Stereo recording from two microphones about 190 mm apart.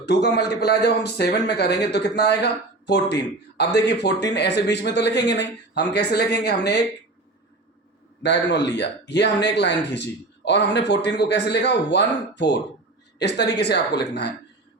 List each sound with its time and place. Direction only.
0.0 s speech: 60° left (ahead or behind)
8.2 s speech: 65° left (ahead or behind)